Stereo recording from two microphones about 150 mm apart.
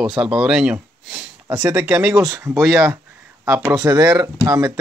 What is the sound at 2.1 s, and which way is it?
Speech, 20° right (ahead or behind).